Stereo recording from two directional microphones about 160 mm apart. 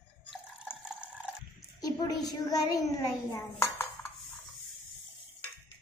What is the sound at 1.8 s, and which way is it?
A child's voice, 25° left (ahead or behind).